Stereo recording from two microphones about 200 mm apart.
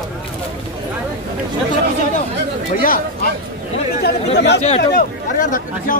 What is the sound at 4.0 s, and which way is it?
Speech, 55° left (ahead or behind).